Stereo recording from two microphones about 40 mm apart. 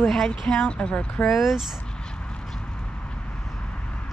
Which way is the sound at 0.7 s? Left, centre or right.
Left.